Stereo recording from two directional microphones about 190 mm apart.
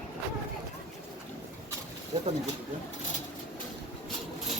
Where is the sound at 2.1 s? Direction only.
35° right (ahead or behind).